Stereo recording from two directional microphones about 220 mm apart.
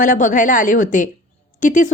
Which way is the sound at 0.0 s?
35° left (ahead or behind).